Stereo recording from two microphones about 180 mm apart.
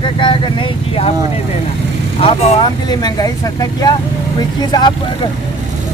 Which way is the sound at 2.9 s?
20° left (ahead or behind).